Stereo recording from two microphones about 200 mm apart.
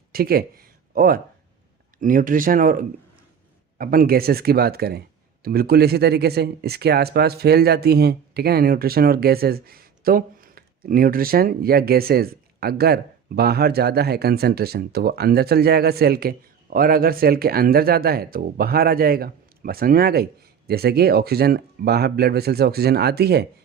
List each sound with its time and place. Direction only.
0.1 s speech: 50° right (ahead or behind)